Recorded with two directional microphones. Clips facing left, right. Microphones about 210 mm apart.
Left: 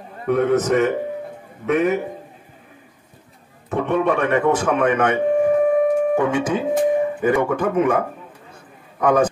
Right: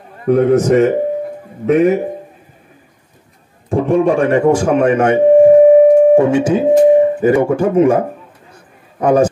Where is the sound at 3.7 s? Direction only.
30° right (ahead or behind).